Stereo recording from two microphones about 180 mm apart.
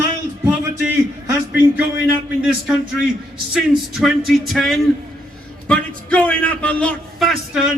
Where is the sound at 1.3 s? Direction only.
10° right (ahead or behind).